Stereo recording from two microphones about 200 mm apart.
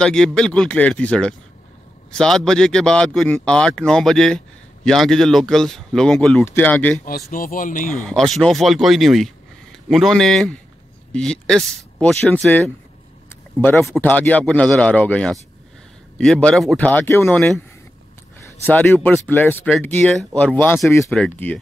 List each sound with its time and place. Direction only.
0.0 s speech: 5° left (ahead or behind)
7.1 s speech: 45° left (ahead or behind)
7.9 s speech: centre (ahead or behind)
18.6 s speech: 10° left (ahead or behind)